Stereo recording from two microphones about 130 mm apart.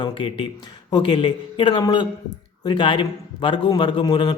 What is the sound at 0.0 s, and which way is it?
A man's voice, 45° left (ahead or behind).